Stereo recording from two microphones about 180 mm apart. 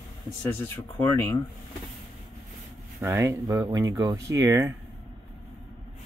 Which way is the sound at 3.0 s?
15° right (ahead or behind).